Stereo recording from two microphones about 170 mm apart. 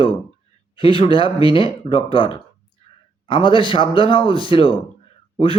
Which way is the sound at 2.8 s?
35° left (ahead or behind).